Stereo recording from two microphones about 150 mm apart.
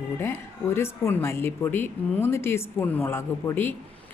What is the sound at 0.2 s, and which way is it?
Speech, 15° left (ahead or behind).